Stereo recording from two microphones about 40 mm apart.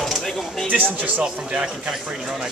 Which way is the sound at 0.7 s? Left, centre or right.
Right.